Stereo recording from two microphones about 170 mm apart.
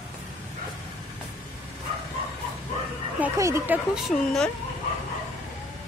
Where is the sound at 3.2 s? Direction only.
15° right (ahead or behind).